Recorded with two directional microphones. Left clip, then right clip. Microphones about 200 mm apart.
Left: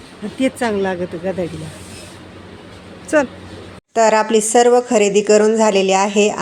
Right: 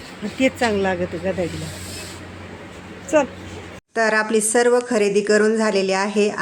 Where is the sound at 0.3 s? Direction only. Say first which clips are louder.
Left 1 dB; 10° left (ahead or behind).